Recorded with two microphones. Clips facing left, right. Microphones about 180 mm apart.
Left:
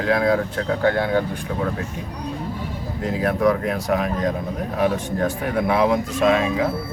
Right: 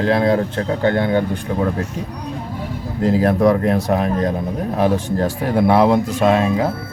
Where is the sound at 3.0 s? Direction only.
30° right (ahead or behind).